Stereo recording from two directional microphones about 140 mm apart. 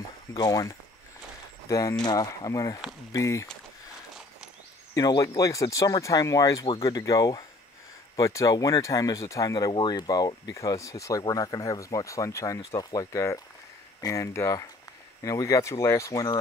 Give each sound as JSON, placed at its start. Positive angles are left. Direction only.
{"t": 0.4, "sound": "speech", "side_deg": 25}
{"t": 4.9, "sound": "speech", "side_deg": 25}